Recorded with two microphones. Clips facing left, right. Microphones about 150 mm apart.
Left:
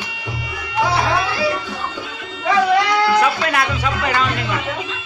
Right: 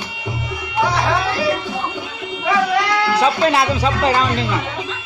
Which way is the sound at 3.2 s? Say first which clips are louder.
Right 3 dB; 25° right (ahead or behind).